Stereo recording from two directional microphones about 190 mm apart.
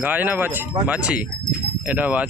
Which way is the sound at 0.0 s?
10° right (ahead or behind).